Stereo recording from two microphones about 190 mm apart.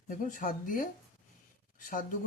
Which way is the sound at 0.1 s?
45° left (ahead or behind).